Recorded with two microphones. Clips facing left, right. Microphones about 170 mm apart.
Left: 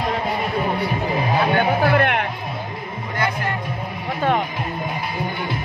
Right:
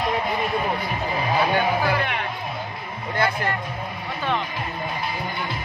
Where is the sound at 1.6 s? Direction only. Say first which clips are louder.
Left 5 dB; 60° left (ahead or behind).